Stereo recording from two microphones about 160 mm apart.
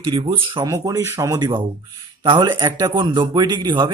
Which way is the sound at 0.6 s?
20° right (ahead or behind).